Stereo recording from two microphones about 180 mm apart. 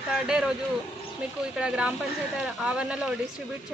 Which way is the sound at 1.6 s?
5° right (ahead or behind).